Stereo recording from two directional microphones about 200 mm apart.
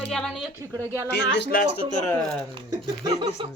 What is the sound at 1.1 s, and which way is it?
Speech, 60° left (ahead or behind).